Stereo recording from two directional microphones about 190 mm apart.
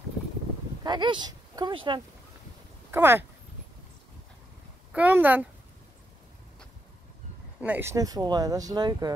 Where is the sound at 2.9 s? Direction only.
10° right (ahead or behind).